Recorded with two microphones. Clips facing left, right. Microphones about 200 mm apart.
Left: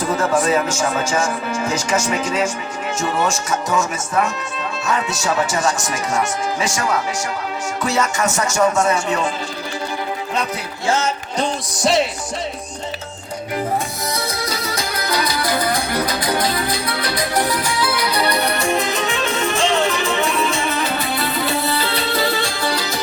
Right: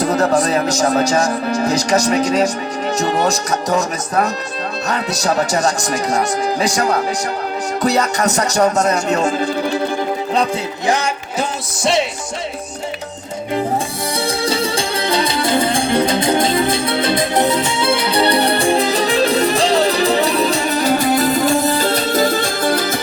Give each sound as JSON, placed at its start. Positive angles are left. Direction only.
{"t": 0.0, "sound": "speech", "side_deg": -40}
{"t": 10.8, "sound": "music", "side_deg": -15}
{"t": 11.8, "sound": "music", "side_deg": 0}
{"t": 14.2, "sound": "music", "side_deg": -30}